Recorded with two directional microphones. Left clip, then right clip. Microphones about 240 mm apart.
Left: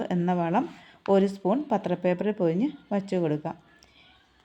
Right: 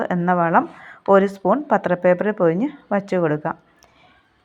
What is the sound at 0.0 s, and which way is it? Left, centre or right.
A woman's voice, centre.